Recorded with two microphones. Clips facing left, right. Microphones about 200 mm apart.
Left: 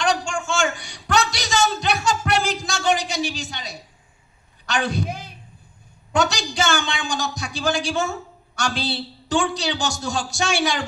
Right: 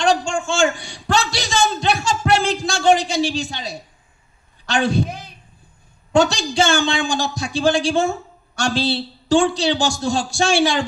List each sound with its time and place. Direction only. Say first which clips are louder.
0.0 s a sound: right 4 dB; 25° right (ahead or behind)
3.3 s a woman's voice: right 6 dB; 25° right (ahead or behind)
6.1 s a woman's voice: right 6 dB; 30° right (ahead or behind)